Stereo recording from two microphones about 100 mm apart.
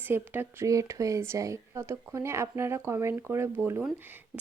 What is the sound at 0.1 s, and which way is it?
Speech, 25° right (ahead or behind).